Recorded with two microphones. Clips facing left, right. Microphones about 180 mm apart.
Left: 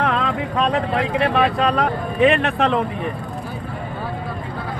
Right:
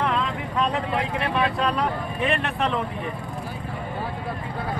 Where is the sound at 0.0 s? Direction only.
90° left.